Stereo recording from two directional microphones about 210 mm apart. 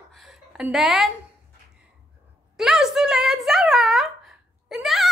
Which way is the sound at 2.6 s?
Centre (ahead or behind).